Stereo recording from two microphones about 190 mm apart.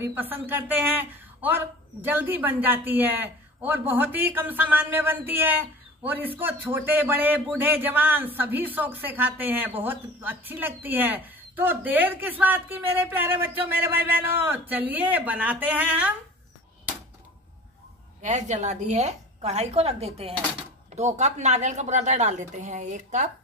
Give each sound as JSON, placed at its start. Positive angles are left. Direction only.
{"t": 0.1, "sound": "speech", "side_deg": -10}
{"t": 18.2, "sound": "a woman's voice", "side_deg": -40}